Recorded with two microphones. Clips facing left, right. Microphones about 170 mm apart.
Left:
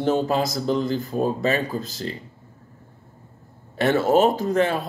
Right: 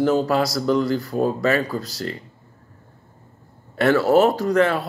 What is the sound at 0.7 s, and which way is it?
Speech, 20° left (ahead or behind).